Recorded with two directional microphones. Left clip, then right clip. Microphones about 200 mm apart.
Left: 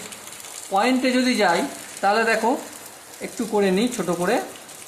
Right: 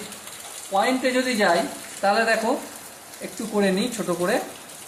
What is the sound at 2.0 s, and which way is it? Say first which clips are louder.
Speech: left 1 dB; 30° left (ahead or behind).